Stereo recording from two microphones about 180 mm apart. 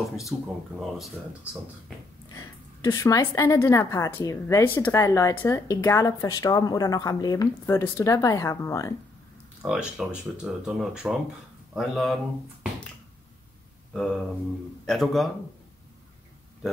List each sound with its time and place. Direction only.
0.3 s speech: 15° right (ahead or behind)
0.7 s speech: centre (ahead or behind)
2.8 s a woman's voice: 20° left (ahead or behind)
9.6 s speech: 5° right (ahead or behind)
13.9 s speech: 5° left (ahead or behind)